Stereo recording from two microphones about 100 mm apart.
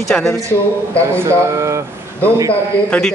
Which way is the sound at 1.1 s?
30° right (ahead or behind).